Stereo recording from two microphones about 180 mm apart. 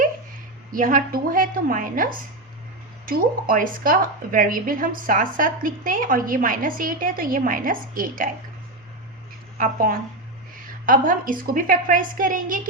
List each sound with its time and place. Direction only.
0.7 s a woman's voice: 50° right (ahead or behind)
9.6 s a woman's voice: 50° right (ahead or behind)